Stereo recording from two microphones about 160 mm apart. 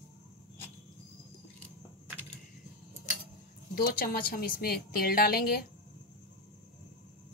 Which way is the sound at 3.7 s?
70° left (ahead or behind).